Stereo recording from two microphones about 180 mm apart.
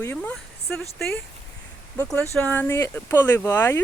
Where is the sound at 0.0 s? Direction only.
10° left (ahead or behind).